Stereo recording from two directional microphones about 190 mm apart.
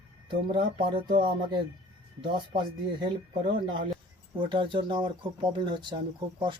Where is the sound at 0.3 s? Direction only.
25° right (ahead or behind).